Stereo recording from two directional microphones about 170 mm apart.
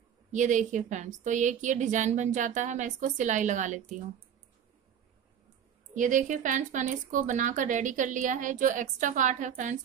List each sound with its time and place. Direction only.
0.3 s speech: 45° right (ahead or behind)
5.9 s speech: 50° right (ahead or behind)